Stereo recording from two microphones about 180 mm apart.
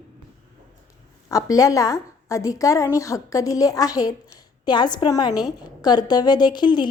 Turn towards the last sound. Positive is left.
turn(degrees=25)  # may be behind; listen again after turning